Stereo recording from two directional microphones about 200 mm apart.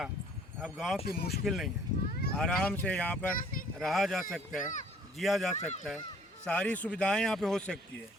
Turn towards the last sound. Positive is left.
turn(degrees=5)  # may be behind; listen again after turning